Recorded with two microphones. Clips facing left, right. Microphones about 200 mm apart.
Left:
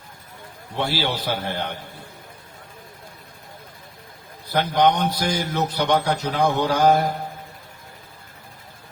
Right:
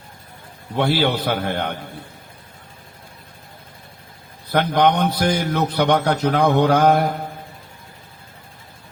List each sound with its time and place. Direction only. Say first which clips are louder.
0.8 s a man's voice: right 6 dB; 60° right (ahead or behind)
4.4 s a man's voice: right 2 dB; 60° right (ahead or behind)